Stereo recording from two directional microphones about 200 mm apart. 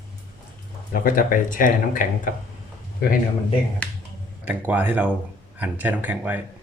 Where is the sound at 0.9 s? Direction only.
45° left (ahead or behind).